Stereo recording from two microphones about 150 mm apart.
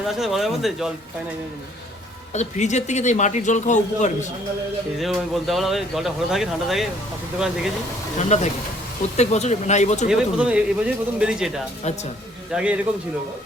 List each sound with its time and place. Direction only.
0.2 s speech: centre (ahead or behind)
2.3 s speech: 50° left (ahead or behind)
4.9 s speech: centre (ahead or behind)
8.2 s speech: 50° left (ahead or behind)
10.1 s speech: 5° right (ahead or behind)